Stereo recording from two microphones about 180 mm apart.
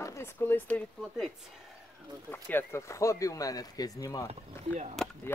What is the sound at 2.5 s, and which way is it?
Speech, 15° left (ahead or behind).